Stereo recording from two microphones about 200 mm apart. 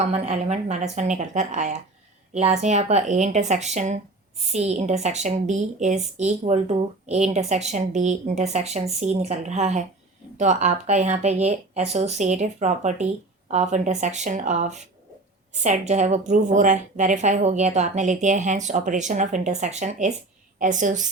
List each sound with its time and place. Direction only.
0.0 s speech: 35° right (ahead or behind)